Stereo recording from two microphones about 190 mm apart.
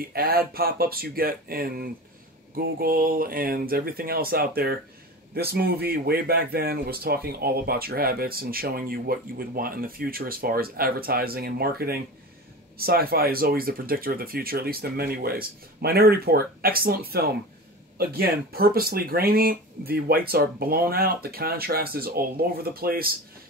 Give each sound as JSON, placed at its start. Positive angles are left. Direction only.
{"t": 0.0, "sound": "speech", "side_deg": -50}